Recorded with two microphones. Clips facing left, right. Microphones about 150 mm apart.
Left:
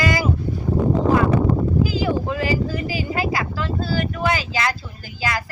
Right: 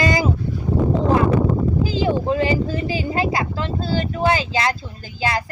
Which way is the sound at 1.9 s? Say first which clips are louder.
Right 2 dB; 25° right (ahead or behind).